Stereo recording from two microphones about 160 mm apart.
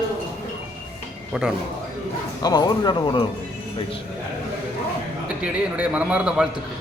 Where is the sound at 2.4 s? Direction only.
25° left (ahead or behind).